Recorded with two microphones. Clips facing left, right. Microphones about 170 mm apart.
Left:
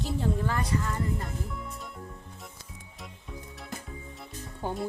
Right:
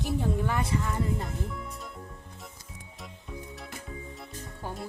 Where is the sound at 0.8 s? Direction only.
5° right (ahead or behind).